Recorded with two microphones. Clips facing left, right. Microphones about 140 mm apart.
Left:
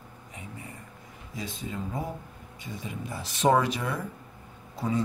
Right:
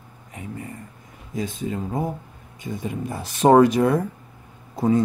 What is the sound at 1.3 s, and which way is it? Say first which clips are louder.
Speech: right 9 dB; 45° right (ahead or behind).